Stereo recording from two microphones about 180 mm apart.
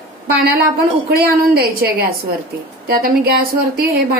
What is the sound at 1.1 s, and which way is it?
A woman's voice, 60° right (ahead or behind).